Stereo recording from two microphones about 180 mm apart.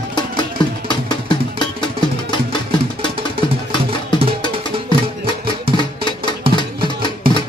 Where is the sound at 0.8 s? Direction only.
25° left (ahead or behind).